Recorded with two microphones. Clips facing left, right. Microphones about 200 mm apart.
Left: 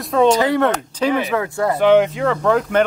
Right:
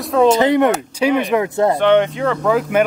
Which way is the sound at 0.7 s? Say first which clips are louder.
Right 2 dB; 10° right (ahead or behind).